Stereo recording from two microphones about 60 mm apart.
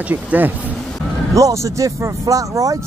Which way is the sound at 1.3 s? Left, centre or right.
Right.